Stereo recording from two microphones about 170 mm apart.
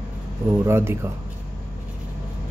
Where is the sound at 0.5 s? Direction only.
15° right (ahead or behind).